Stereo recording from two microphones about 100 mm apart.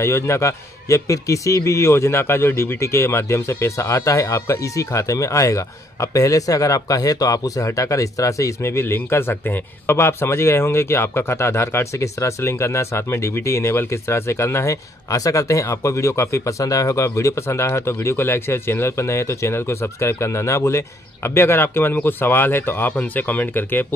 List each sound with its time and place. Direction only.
0.0 s a man's voice: 30° left (ahead or behind)